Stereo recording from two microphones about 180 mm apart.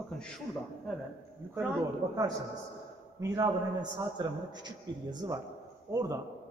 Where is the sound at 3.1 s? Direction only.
20° right (ahead or behind).